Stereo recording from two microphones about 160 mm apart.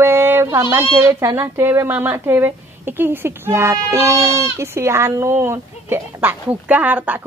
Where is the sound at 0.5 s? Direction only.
15° right (ahead or behind).